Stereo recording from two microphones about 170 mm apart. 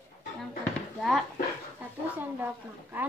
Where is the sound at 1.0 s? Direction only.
Centre (ahead or behind).